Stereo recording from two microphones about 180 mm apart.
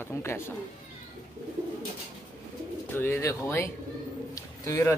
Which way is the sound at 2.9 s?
10° left (ahead or behind).